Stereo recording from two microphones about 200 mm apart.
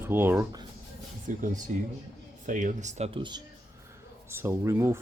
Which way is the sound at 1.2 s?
40° right (ahead or behind).